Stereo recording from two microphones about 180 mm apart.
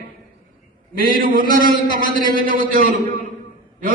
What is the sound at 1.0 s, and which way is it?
A man's voice, 50° right (ahead or behind).